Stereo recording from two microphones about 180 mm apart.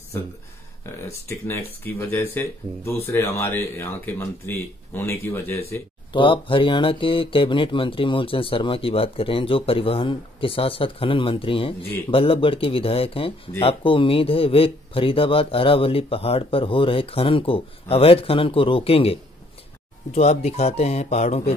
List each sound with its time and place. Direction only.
1.0 s speech: 15° left (ahead or behind)
6.1 s speech: 30° left (ahead or behind)
20.2 s speech: 35° left (ahead or behind)